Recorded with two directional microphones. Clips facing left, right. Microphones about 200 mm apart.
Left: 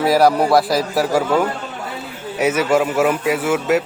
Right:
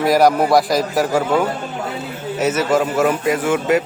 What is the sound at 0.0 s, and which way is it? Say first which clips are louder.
Speech: even; 5° left (ahead or behind).